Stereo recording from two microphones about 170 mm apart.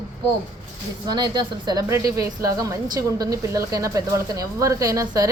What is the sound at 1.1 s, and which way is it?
A woman's voice, 25° right (ahead or behind).